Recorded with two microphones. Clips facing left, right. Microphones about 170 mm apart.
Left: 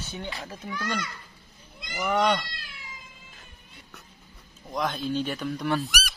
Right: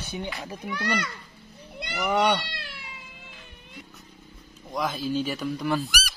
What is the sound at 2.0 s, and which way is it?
Speech, 10° right (ahead or behind).